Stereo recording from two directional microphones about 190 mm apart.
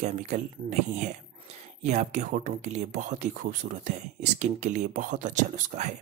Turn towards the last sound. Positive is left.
turn(degrees=-40)  # may be behind; listen again after turning